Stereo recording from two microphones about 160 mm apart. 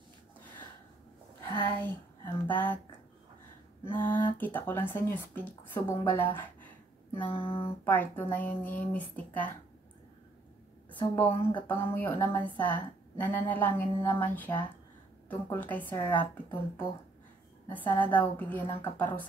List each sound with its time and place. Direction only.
1.6 s a sound: 10° left (ahead or behind)
2.4 s speech: 10° left (ahead or behind)
3.9 s a woman's voice: 10° left (ahead or behind)
7.2 s a sound: 30° left (ahead or behind)
7.6 s a woman's voice: 10° left (ahead or behind)
11.0 s a woman's voice: 10° left (ahead or behind)